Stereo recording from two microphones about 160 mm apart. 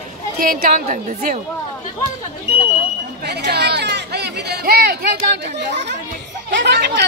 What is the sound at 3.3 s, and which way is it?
Chatter, 90° right.